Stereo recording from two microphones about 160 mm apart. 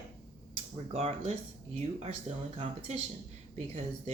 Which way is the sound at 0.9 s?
40° right (ahead or behind).